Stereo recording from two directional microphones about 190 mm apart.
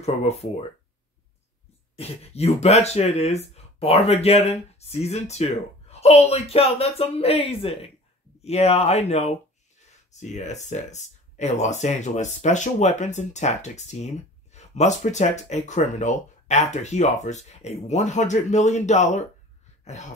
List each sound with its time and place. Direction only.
0.0 s speech: 35° left (ahead or behind)
2.0 s speech: 35° left (ahead or behind)
19.8 s throat clearing: 35° left (ahead or behind)